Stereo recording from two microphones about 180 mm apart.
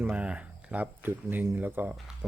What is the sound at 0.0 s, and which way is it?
Speech, 10° right (ahead or behind).